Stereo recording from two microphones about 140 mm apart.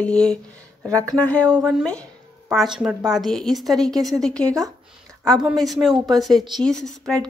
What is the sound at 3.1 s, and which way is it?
Speech, centre (ahead or behind).